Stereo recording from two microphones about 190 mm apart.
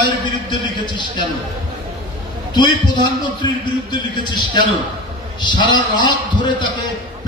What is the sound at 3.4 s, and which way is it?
A man's voice, 25° left (ahead or behind).